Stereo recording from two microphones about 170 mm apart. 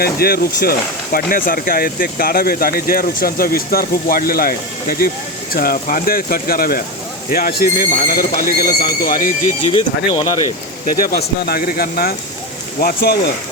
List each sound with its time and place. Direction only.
0.0 s speech: 65° left (ahead or behind)
9.6 s speech: 30° left (ahead or behind)
11.4 s speech: 60° left (ahead or behind)